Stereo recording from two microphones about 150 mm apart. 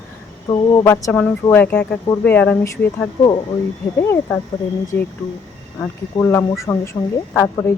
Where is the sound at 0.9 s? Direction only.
15° left (ahead or behind).